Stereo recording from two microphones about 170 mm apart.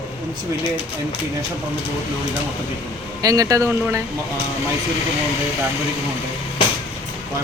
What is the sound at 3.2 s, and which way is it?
Speech, 20° right (ahead or behind).